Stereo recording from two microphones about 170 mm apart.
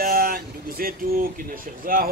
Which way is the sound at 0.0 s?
60° right (ahead or behind).